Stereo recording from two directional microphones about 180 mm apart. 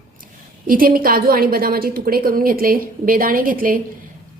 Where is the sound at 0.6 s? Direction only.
55° right (ahead or behind).